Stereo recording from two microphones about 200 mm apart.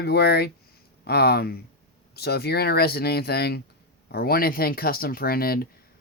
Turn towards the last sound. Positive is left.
turn(degrees=50)  # may be behind; listen again after turning